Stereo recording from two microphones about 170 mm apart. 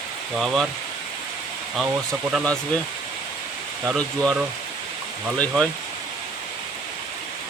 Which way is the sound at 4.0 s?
Centre (ahead or behind).